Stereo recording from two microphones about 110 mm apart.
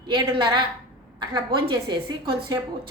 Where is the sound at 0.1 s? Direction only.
45° right (ahead or behind).